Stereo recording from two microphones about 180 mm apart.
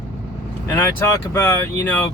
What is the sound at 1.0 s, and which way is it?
Speech, 15° left (ahead or behind).